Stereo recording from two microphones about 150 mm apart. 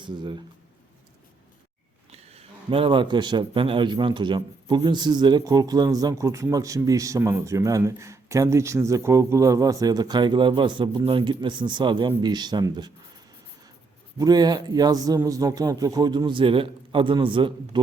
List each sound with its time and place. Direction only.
0.0 s speech: 30° right (ahead or behind)
2.0 s a man's voice: 45° right (ahead or behind); by 12.9 s 30° right (ahead or behind)
14.2 s a man's voice: 25° right (ahead or behind)